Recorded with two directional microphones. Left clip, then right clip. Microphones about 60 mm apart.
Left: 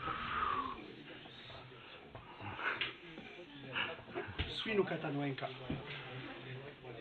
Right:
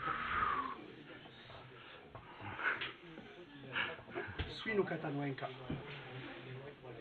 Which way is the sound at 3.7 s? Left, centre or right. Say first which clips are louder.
Even; centre.